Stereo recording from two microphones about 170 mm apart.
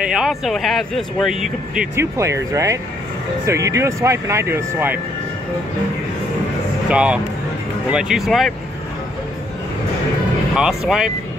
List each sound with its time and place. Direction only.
0.0 s speech: 5° right (ahead or behind)
2.0 s speech: 15° right (ahead or behind)
6.9 s speech: 5° right (ahead or behind)
10.5 s speech: centre (ahead or behind)